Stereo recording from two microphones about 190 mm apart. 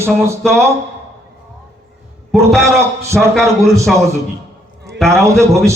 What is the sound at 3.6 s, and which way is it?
Speech, 15° right (ahead or behind).